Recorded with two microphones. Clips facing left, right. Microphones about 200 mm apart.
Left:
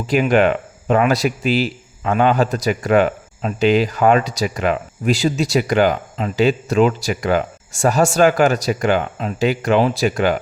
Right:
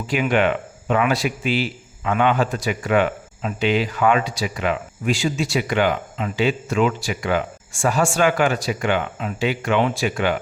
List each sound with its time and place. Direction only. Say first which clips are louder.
0.1 s speech: left 4 dB; 40° left (ahead or behind)